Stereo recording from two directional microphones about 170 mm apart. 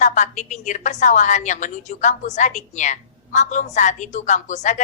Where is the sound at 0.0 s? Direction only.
45° left (ahead or behind).